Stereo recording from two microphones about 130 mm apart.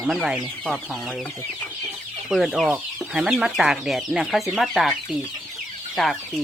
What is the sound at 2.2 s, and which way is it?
Speech, 5° right (ahead or behind).